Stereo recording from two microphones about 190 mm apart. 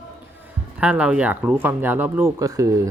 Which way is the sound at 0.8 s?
10° right (ahead or behind).